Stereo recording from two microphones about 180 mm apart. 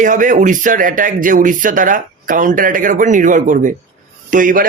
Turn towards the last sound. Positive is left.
turn(degrees=-45)  # may be behind; listen again after turning